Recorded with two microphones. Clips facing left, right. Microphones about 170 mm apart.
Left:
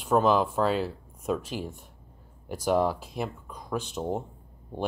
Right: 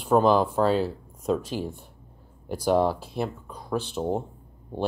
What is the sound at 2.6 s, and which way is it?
Speech, 35° right (ahead or behind).